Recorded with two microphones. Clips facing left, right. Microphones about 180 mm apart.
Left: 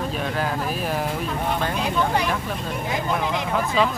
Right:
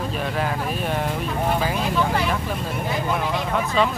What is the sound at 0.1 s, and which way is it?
Vehicle, centre (ahead or behind).